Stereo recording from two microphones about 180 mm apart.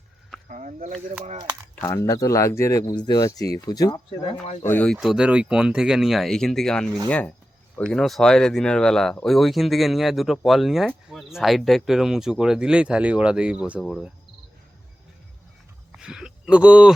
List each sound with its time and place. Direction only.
0.4 s speech: 45° right (ahead or behind)
1.8 s speech: 20° left (ahead or behind)
4.6 s speech: 10° left (ahead or behind)
15.9 s speech: 5° right (ahead or behind)